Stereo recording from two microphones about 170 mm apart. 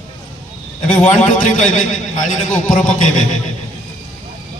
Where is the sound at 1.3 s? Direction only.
45° left (ahead or behind).